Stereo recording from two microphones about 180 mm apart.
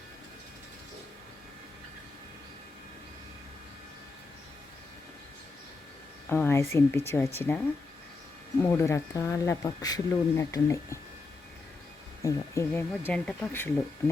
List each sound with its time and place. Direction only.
6.2 s speech: 10° left (ahead or behind)
8.6 s speech: 15° left (ahead or behind)
12.2 s speech: 15° left (ahead or behind)